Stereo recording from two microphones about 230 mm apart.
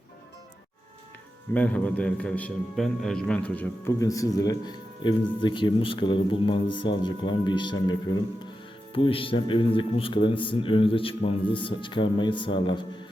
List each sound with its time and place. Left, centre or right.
1.5 s a man's voice: centre; by 12.8 s left